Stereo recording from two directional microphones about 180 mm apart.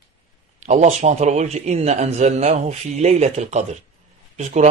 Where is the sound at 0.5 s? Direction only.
40° right (ahead or behind).